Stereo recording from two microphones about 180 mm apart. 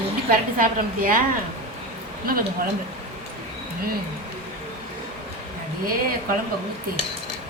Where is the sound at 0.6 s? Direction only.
50° right (ahead or behind).